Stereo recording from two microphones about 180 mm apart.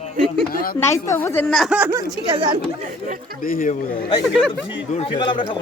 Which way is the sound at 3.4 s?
50° left (ahead or behind).